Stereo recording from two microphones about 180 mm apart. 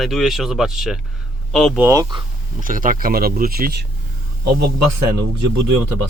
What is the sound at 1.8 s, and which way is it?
Speech, 20° right (ahead or behind).